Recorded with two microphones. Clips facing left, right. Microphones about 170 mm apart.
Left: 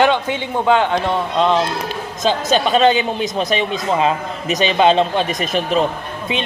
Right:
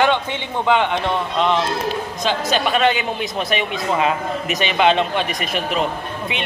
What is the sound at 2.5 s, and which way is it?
A man's voice, 25° left (ahead or behind).